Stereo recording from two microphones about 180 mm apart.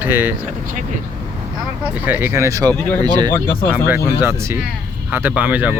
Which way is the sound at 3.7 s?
10° right (ahead or behind).